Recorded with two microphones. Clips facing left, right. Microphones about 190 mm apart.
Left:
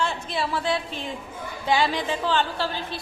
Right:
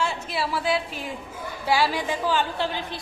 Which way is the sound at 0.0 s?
5° right (ahead or behind).